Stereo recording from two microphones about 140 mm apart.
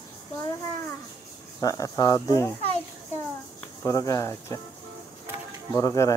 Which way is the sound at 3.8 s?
25° left (ahead or behind).